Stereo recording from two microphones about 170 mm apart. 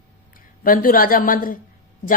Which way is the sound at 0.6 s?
55° left (ahead or behind).